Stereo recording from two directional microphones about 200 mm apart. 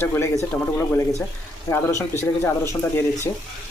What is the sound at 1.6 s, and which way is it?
Speech, 15° left (ahead or behind).